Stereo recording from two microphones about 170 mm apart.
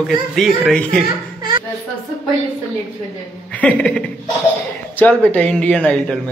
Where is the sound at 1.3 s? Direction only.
25° right (ahead or behind).